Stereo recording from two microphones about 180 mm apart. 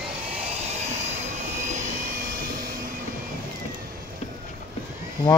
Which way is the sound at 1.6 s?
40° right (ahead or behind).